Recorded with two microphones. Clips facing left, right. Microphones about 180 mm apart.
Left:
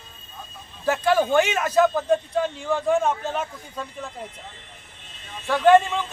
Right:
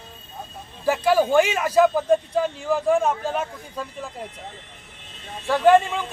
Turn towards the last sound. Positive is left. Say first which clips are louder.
# even
turn(degrees=-10)  # may be behind; listen again after turning